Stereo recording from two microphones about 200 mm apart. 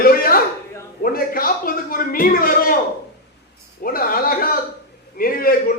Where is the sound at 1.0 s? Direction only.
45° left (ahead or behind).